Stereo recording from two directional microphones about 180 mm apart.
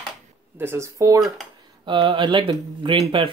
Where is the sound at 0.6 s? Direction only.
15° right (ahead or behind).